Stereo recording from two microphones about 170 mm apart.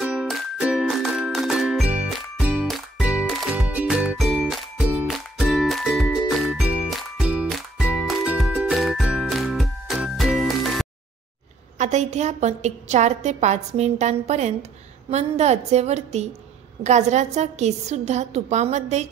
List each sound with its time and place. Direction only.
0.0 s music: 5° right (ahead or behind)
11.8 s a woman's voice: 45° right (ahead or behind)